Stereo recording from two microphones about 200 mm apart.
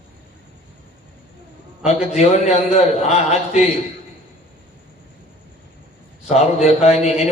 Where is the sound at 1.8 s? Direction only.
35° left (ahead or behind).